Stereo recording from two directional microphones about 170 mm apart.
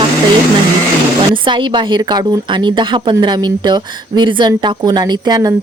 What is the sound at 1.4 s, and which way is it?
A woman's voice, 30° right (ahead or behind).